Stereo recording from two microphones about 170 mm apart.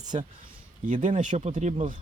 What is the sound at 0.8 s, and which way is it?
Speech, 50° right (ahead or behind).